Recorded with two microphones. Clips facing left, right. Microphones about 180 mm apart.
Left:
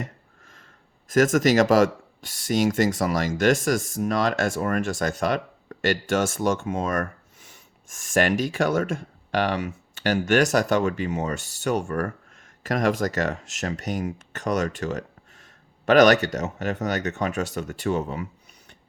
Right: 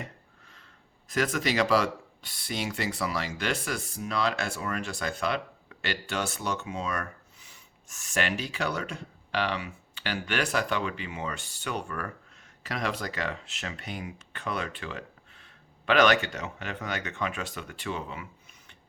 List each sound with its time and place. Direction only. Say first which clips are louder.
0.0 s speech: left 6 dB; 45° left (ahead or behind)